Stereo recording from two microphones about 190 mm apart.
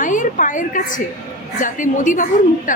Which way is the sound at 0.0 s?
45° left (ahead or behind).